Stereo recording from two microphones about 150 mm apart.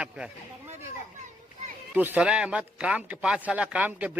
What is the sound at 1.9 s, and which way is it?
A man's voice, 10° right (ahead or behind).